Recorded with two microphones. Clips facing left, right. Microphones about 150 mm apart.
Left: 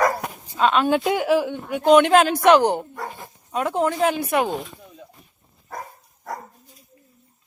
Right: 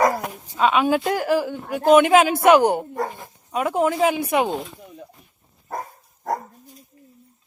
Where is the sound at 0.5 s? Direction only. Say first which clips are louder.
Even; 5° right (ahead or behind).